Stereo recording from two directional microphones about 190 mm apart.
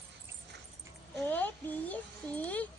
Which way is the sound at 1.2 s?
10° left (ahead or behind).